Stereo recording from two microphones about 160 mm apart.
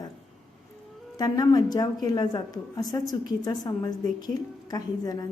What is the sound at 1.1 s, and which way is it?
A woman's voice, 25° left (ahead or behind).